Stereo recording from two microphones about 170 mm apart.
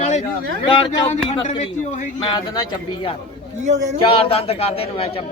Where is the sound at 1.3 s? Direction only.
40° left (ahead or behind).